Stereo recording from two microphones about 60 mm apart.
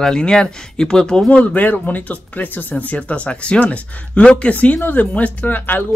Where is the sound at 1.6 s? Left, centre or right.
Left.